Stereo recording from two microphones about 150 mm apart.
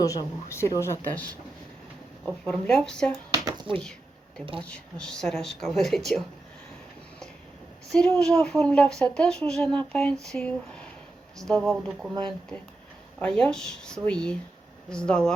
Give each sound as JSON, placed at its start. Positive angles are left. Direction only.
{"t": 0.0, "sound": "speech", "side_deg": 20}
{"t": 3.3, "sound": "a sound", "side_deg": -25}
{"t": 4.6, "sound": "speech", "side_deg": 5}
{"t": 7.9, "sound": "speech", "side_deg": 5}
{"t": 13.1, "sound": "speech", "side_deg": 5}